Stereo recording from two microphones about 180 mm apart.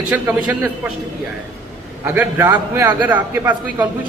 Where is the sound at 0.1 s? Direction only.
10° right (ahead or behind).